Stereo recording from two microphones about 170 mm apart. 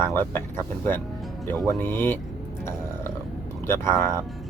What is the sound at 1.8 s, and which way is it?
Speech, 10° left (ahead or behind).